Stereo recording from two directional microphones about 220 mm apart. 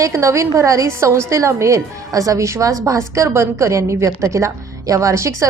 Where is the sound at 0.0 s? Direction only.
15° right (ahead or behind).